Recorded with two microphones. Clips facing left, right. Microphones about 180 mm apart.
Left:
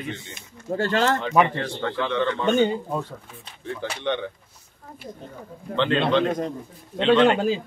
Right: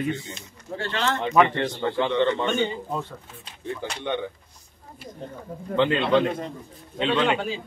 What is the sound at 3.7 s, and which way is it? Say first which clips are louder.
Speech: left 2 dB; 10° right (ahead or behind).